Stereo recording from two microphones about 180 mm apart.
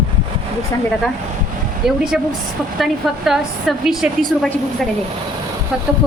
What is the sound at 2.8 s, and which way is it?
A woman's voice, centre (ahead or behind).